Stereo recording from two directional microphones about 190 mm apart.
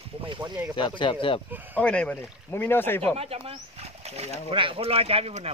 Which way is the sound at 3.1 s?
30° right (ahead or behind).